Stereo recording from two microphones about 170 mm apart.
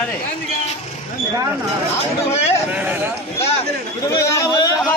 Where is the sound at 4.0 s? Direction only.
20° left (ahead or behind).